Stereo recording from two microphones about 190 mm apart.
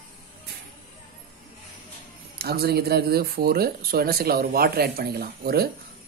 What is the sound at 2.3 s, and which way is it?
Speech, 55° right (ahead or behind).